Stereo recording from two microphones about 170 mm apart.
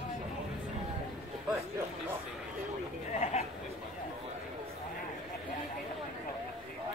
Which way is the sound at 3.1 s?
45° left (ahead or behind).